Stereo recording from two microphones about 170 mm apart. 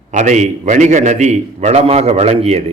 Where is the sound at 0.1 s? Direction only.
45° right (ahead or behind).